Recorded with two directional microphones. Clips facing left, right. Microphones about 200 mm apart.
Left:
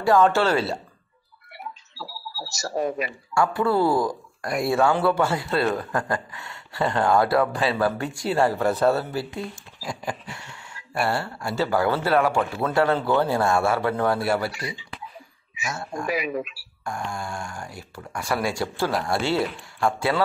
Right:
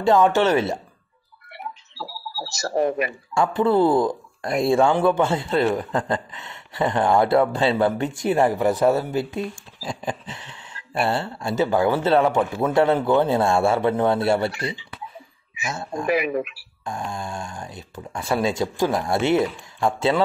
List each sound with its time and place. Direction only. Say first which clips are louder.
0.0 s speech: right 2 dB; 20° right (ahead or behind)
1.5 s a sound: right 3 dB; 50° right (ahead or behind)
3.3 s speech: right 3 dB; 20° right (ahead or behind)
15.7 s speech: right 3 dB; 20° right (ahead or behind)
16.1 s speech: right 5 dB; 55° right (ahead or behind)
16.8 s speech: right 1 dB; 20° right (ahead or behind)